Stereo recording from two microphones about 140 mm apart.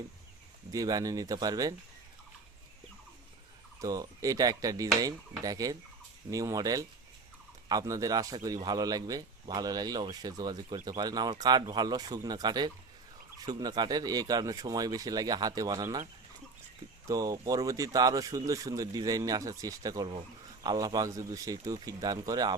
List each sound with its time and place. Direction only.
0.7 s speech: 25° right (ahead or behind)
3.8 s speech: 25° right (ahead or behind)
17.1 s speech: 25° right (ahead or behind)